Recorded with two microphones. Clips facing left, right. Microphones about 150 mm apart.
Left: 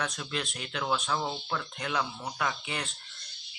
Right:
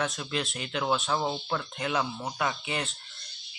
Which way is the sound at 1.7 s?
5° right (ahead or behind).